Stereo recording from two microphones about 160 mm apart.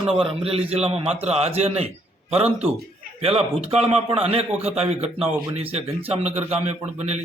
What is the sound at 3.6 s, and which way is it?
A man's voice, 40° right (ahead or behind).